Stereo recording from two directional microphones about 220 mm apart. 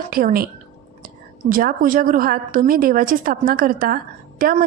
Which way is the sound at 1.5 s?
40° right (ahead or behind).